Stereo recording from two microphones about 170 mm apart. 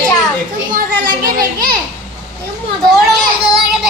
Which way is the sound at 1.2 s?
60° right (ahead or behind).